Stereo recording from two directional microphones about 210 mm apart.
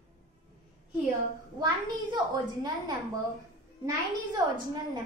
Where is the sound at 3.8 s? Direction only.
20° right (ahead or behind).